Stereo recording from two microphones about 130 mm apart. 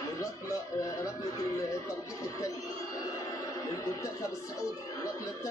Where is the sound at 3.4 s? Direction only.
25° left (ahead or behind).